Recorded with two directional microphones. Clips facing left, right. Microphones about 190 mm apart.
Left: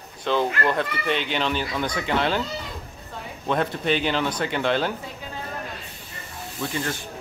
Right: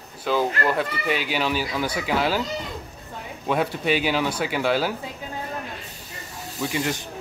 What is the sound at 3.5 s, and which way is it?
Speech, 10° right (ahead or behind).